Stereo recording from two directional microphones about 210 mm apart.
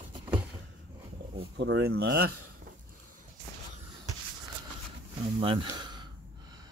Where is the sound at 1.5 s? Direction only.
60° right (ahead or behind).